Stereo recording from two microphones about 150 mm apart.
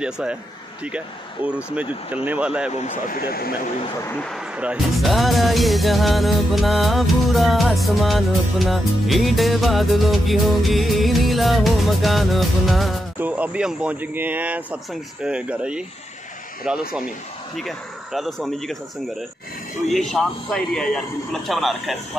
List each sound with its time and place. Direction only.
0.0 s speech: 5° right (ahead or behind)
2.7 s speech: 50° left (ahead or behind)
3.2 s speech: 90° left
4.0 s a man's voice: 15° left (ahead or behind)
4.3 s speech: 5° right (ahead or behind)
19.9 s speech: 5° left (ahead or behind)